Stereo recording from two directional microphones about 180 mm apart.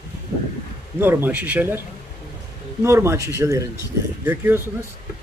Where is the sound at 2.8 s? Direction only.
15° right (ahead or behind).